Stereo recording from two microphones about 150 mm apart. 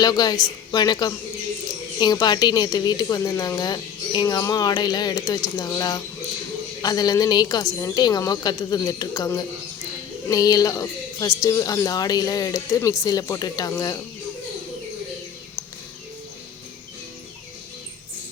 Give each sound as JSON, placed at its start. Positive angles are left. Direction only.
{"t": 0.0, "sound": "speech", "side_deg": 25}